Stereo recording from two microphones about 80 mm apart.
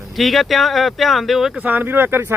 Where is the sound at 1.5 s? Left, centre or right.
Right.